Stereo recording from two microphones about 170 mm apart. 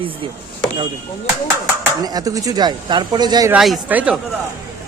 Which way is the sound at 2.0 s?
20° right (ahead or behind).